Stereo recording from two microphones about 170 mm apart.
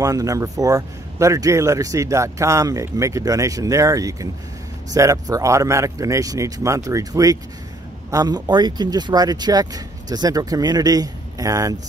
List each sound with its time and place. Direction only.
0.0 s speech: 20° right (ahead or behind)